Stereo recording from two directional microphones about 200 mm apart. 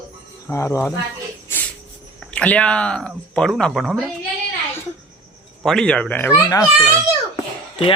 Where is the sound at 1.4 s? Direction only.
10° left (ahead or behind).